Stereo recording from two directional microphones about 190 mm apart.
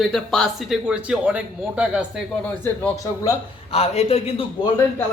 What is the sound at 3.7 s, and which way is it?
A man's voice, 30° left (ahead or behind).